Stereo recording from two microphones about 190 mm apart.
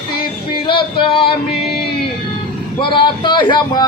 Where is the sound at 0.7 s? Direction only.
25° left (ahead or behind).